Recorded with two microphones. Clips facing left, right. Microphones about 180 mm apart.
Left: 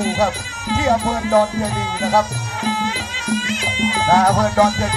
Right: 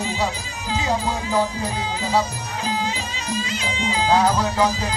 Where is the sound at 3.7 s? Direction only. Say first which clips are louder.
Left 3 dB; 70° left (ahead or behind).